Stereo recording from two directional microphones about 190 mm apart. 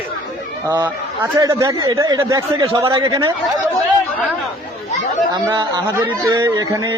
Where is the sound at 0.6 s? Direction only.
20° right (ahead or behind).